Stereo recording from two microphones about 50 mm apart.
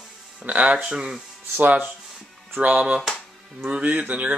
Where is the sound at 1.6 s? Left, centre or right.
Right.